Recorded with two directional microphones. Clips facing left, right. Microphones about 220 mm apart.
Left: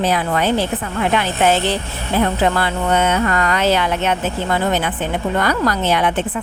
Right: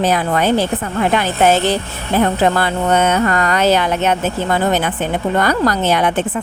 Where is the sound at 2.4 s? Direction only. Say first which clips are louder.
Right 2 dB; 45° right (ahead or behind).